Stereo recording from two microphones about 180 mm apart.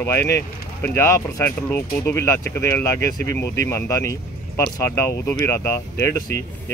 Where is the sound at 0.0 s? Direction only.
10° left (ahead or behind).